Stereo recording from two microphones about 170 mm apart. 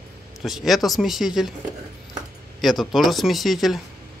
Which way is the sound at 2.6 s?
Centre (ahead or behind).